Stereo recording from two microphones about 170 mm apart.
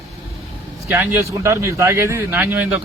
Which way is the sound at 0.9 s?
15° right (ahead or behind).